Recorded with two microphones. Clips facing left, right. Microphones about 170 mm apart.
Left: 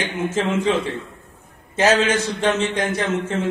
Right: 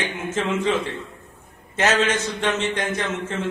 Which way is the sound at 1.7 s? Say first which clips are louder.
Left 3 dB; 30° left (ahead or behind).